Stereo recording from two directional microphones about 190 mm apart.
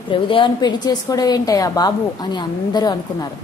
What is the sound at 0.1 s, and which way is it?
A woman's voice, 25° left (ahead or behind).